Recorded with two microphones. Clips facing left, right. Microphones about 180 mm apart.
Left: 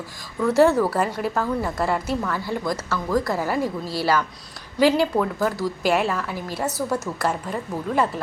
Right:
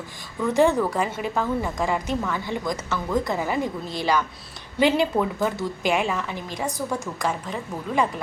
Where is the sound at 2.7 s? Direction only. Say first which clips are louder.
Left 2 dB; 20° right (ahead or behind).